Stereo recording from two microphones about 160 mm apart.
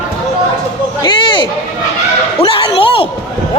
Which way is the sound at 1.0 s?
30° left (ahead or behind).